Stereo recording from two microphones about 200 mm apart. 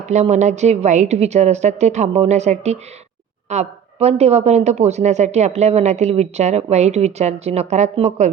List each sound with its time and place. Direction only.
0.0 s a woman's voice: 35° right (ahead or behind)